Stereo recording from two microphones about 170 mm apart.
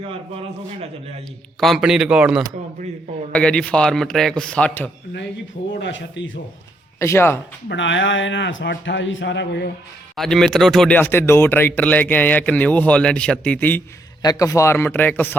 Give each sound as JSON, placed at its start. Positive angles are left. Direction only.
{"t": 0.3, "sound": "a man's voice", "side_deg": -35}
{"t": 1.6, "sound": "a man's voice", "side_deg": 0}
{"t": 3.3, "sound": "a man's voice", "side_deg": 5}
{"t": 5.8, "sound": "a man's voice", "side_deg": 90}
{"t": 7.0, "sound": "speech", "side_deg": 15}
{"t": 7.7, "sound": "a man's voice", "side_deg": 90}
{"t": 10.2, "sound": "speech", "side_deg": 0}
{"t": 14.2, "sound": "speech", "side_deg": 20}